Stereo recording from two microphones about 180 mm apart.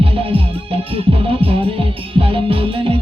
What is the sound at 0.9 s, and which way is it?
Music, 30° right (ahead or behind).